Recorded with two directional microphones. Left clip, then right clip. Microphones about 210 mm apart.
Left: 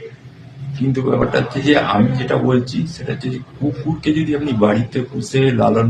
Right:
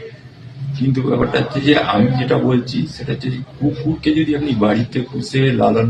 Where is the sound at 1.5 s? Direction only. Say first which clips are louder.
Right 1 dB; 15° left (ahead or behind).